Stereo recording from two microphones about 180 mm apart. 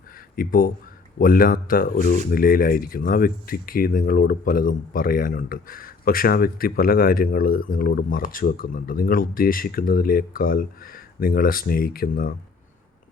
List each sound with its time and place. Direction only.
0.3 s speech: 50° left (ahead or behind)